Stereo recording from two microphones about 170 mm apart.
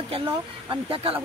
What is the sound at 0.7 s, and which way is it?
Speech, 35° right (ahead or behind).